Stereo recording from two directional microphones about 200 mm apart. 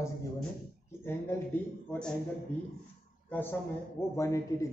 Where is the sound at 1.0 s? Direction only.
10° left (ahead or behind).